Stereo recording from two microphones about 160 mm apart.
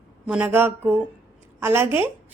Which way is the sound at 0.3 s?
10° right (ahead or behind).